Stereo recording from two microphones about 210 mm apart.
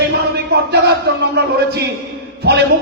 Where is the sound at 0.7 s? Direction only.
50° right (ahead or behind).